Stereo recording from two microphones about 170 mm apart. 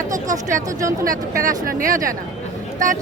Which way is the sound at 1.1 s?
55° right (ahead or behind).